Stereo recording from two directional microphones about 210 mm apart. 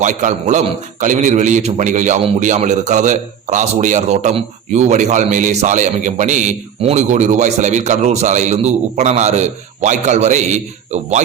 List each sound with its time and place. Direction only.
0.0 s a man's voice: 40° right (ahead or behind)